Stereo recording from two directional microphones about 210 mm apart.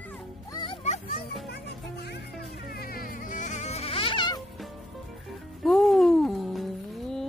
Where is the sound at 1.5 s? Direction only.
50° left (ahead or behind).